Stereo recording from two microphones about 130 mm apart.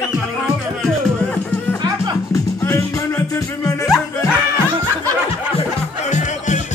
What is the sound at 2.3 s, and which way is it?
Music, 20° left (ahead or behind).